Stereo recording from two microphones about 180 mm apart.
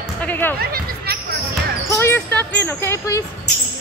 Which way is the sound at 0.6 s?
60° right (ahead or behind).